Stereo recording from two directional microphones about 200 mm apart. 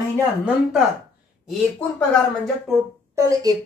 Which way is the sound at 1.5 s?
5° left (ahead or behind).